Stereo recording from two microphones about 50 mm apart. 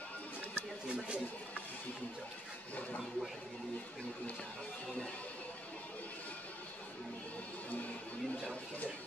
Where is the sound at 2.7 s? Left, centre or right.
Left.